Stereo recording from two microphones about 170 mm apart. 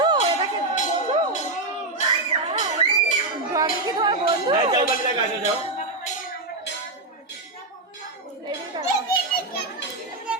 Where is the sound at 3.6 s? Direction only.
25° right (ahead or behind).